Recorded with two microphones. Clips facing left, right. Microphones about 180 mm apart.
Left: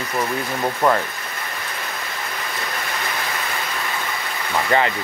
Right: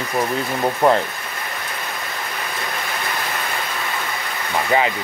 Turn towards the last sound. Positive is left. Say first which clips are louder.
# right 1 dB
turn(degrees=-10)  # may be behind; listen again after turning